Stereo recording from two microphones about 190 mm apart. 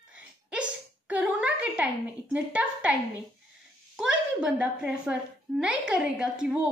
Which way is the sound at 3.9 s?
5° right (ahead or behind).